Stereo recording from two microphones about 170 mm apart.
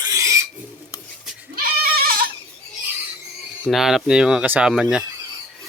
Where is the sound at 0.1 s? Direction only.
20° right (ahead or behind).